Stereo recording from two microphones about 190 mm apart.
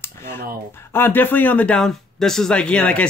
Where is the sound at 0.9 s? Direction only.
10° left (ahead or behind).